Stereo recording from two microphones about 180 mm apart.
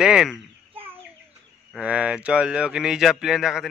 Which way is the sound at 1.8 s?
5° right (ahead or behind).